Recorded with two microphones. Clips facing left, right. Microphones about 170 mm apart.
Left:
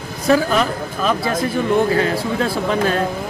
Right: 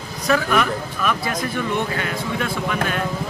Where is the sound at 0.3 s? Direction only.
30° left (ahead or behind).